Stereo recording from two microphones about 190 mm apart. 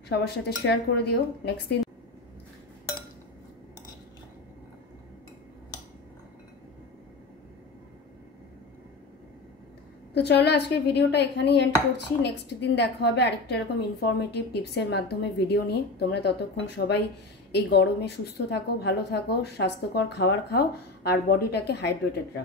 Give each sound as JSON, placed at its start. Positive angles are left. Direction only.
{"t": 0.1, "sound": "a woman's voice", "side_deg": 60}
{"t": 10.1, "sound": "a woman's voice", "side_deg": 60}